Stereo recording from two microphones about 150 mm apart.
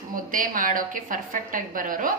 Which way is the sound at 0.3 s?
65° right (ahead or behind).